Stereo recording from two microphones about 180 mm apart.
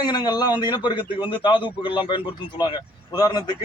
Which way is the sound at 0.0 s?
25° left (ahead or behind).